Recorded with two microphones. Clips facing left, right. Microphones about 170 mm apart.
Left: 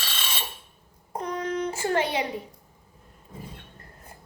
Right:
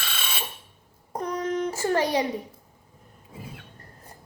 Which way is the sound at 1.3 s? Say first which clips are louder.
Right 2 dB; 40° right (ahead or behind).